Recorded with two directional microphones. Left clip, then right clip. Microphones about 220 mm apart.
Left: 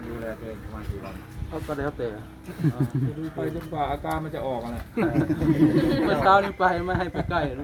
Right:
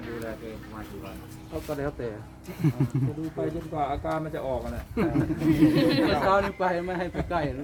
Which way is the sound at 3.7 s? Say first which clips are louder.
Left 1 dB; 15° left (ahead or behind).